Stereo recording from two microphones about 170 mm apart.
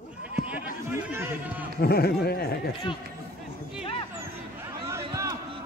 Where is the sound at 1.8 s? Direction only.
65° left (ahead or behind).